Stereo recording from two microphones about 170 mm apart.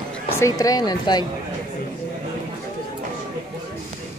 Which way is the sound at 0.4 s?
20° left (ahead or behind).